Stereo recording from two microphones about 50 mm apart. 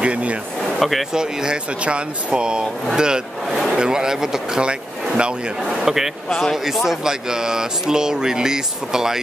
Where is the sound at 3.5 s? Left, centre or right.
Centre.